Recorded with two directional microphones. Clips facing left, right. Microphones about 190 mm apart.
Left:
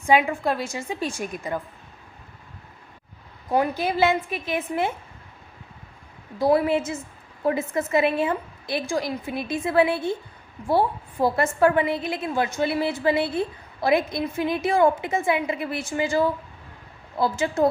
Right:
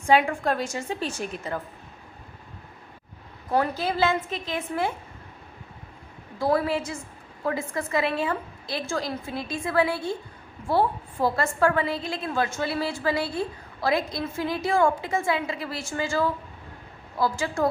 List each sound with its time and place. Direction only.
0.1 s a woman's voice: 10° left (ahead or behind)
3.5 s a woman's voice: 15° left (ahead or behind)
6.4 s a woman's voice: 20° left (ahead or behind)